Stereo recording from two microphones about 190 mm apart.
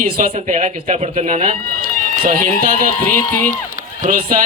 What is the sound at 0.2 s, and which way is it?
A man's voice, 40° right (ahead or behind).